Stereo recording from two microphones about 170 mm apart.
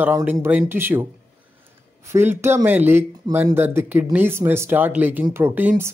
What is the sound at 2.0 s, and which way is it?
Speech, 15° right (ahead or behind).